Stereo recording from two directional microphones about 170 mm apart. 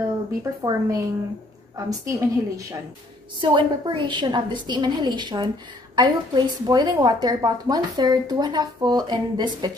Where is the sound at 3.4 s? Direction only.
30° right (ahead or behind).